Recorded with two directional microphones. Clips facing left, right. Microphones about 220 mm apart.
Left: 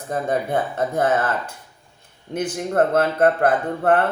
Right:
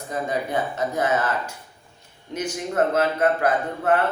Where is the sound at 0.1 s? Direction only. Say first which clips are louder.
Left 4 dB; 55° left (ahead or behind).